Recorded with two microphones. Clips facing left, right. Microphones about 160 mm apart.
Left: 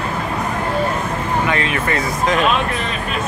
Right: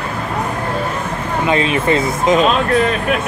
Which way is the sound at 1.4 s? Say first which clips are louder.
Right 4 dB; 20° right (ahead or behind).